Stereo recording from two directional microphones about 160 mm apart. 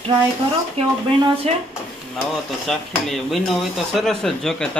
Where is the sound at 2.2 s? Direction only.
Centre (ahead or behind).